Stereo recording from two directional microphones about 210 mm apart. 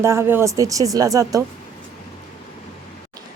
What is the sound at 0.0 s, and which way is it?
A woman's voice, 10° right (ahead or behind).